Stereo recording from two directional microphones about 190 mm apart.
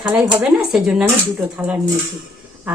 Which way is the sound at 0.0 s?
5° right (ahead or behind).